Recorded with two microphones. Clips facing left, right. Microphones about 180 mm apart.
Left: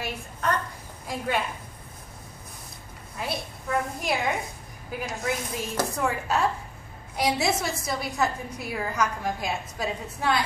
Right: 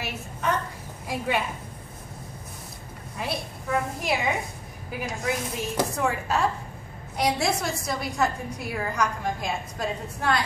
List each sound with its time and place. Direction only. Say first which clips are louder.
0.0 s a sound: even; 5° right (ahead or behind)
1.0 s a woman's voice: right 1 dB; 5° right (ahead or behind)
3.2 s a woman's voice: right 1 dB; centre (ahead or behind)